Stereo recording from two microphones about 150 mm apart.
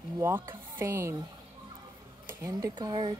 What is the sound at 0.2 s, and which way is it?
Speech, 15° right (ahead or behind).